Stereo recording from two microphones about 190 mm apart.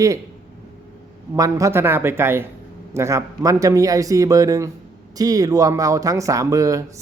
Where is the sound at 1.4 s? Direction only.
15° right (ahead or behind).